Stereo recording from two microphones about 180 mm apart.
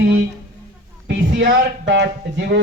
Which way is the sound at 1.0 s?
55° right (ahead or behind).